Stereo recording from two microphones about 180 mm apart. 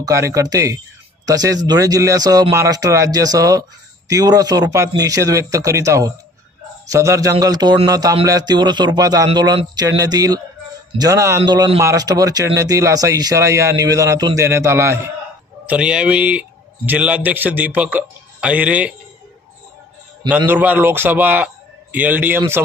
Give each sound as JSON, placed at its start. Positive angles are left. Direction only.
{"t": 0.0, "sound": "a man's voice", "side_deg": -20}
{"t": 20.2, "sound": "speech", "side_deg": -10}